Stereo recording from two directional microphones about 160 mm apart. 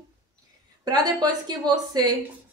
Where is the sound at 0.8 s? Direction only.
25° right (ahead or behind).